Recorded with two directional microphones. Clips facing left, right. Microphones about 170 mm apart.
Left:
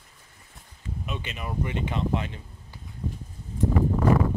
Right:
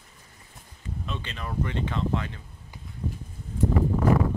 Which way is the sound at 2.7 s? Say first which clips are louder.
Right 1 dB; 15° right (ahead or behind).